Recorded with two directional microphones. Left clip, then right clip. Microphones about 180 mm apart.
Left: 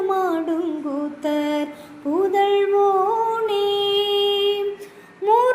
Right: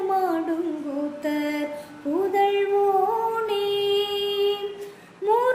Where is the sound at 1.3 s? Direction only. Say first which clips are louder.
Left 6 dB; 15° left (ahead or behind).